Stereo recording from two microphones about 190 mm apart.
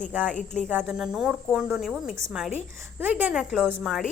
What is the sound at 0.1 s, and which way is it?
A woman's voice, 10° right (ahead or behind).